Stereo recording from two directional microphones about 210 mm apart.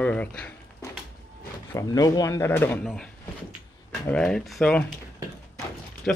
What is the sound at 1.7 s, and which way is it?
Speech, 15° left (ahead or behind).